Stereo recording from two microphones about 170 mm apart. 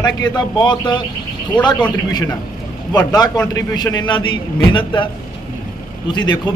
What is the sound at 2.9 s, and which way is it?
A man's voice, 20° left (ahead or behind).